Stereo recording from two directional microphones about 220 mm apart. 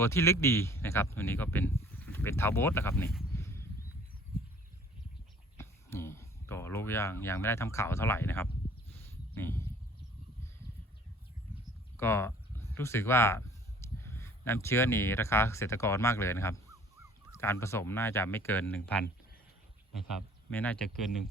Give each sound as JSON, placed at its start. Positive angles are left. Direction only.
{"t": 0.0, "sound": "speech", "side_deg": 10}
{"t": 3.3, "sound": "a sound", "side_deg": 10}
{"t": 5.5, "sound": "speech", "side_deg": 10}
{"t": 8.9, "sound": "a sound", "side_deg": 10}
{"t": 11.9, "sound": "speech", "side_deg": 10}
{"t": 20.1, "sound": "speech", "side_deg": 5}